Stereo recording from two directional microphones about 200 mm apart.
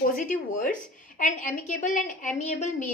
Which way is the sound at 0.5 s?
40° left (ahead or behind).